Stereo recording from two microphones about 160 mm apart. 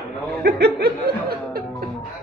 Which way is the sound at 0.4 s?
75° right (ahead or behind).